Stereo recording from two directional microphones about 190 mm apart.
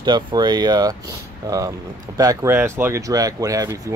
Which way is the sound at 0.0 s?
25° right (ahead or behind).